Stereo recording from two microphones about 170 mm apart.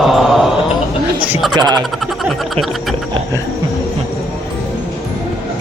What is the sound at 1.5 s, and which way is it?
Speech, 25° right (ahead or behind).